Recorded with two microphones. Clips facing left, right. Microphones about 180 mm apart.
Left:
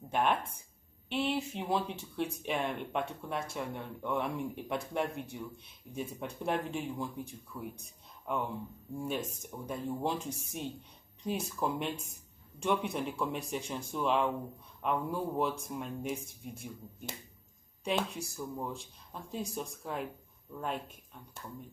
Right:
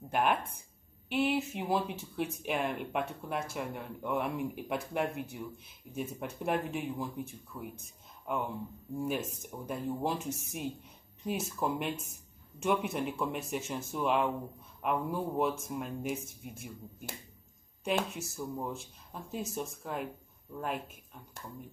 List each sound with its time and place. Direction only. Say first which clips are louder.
0.1 s speech: right 1 dB; 5° right (ahead or behind)
17.8 s speech: right 1 dB; 5° right (ahead or behind)